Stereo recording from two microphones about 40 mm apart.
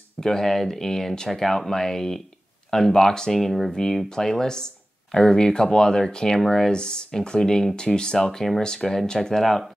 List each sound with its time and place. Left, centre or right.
0.2 s speech: centre
3.7 s speech: centre
6.7 s speech: left; by 9.7 s centre